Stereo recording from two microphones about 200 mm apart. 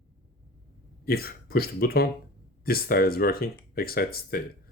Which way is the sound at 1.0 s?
50° left (ahead or behind).